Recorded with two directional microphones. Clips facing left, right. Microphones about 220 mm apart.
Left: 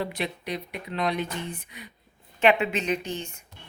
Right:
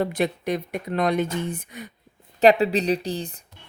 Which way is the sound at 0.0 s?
45° right (ahead or behind).